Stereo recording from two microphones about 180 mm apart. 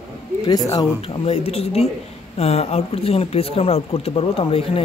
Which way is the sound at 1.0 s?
35° left (ahead or behind).